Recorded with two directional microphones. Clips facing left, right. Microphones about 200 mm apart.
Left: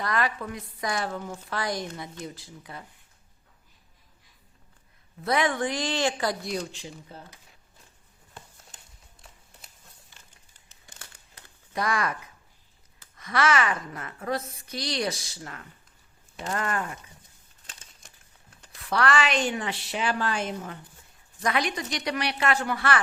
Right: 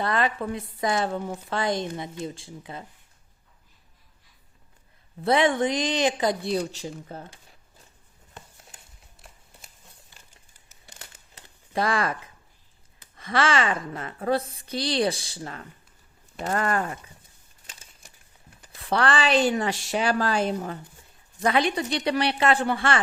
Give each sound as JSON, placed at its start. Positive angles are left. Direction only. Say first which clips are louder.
{"t": 0.0, "sound": "speech", "louder": "right 3 dB", "side_deg": -25}
{"t": 5.2, "sound": "speech", "louder": "right 4 dB", "side_deg": -25}
{"t": 10.7, "sound": "crumpling", "louder": "right 2 dB", "side_deg": -20}
{"t": 13.1, "sound": "a woman's voice", "louder": "right 1 dB", "side_deg": -30}
{"t": 16.4, "sound": "speech", "louder": "right 4 dB", "side_deg": -45}
{"t": 17.7, "sound": "a sound", "louder": "right 1 dB", "side_deg": -10}
{"t": 18.7, "sound": "a woman's voice", "louder": "right 1 dB", "side_deg": -30}